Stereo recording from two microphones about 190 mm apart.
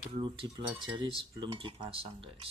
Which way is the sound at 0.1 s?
30° right (ahead or behind).